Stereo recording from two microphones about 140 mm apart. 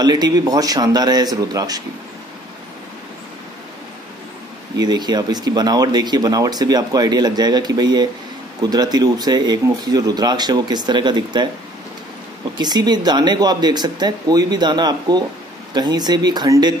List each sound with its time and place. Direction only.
0.0 s speech: 30° right (ahead or behind)
4.7 s speech: 30° right (ahead or behind)
12.5 s speech: 30° right (ahead or behind)